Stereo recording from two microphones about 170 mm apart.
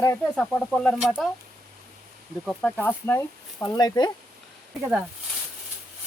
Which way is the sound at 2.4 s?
5° left (ahead or behind).